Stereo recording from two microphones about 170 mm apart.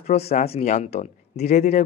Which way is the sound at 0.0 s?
40° left (ahead or behind).